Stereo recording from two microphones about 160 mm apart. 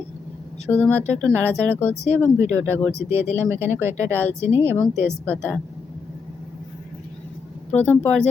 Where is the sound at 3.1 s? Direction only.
15° right (ahead or behind).